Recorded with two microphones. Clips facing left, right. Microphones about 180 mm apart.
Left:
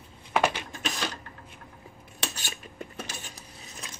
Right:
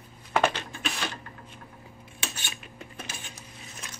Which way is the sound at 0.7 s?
40° left (ahead or behind).